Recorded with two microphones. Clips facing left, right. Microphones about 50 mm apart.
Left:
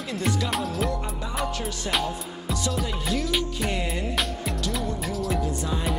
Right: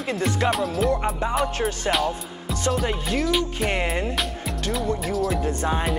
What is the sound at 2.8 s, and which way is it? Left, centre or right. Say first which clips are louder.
Music: right 4 dB; right.